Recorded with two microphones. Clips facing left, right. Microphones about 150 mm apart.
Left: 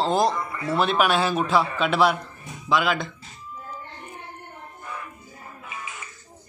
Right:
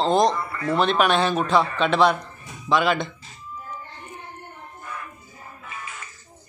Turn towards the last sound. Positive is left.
turn(degrees=15)  # may be behind; listen again after turning